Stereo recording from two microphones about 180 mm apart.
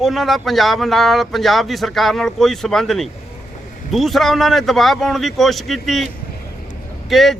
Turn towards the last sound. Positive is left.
turn(degrees=0)  # may be behind; listen again after turning